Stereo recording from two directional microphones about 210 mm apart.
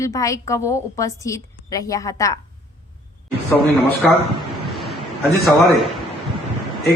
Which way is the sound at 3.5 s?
10° left (ahead or behind).